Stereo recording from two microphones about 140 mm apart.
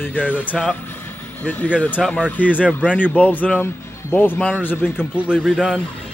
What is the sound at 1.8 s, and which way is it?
Speech, 10° left (ahead or behind).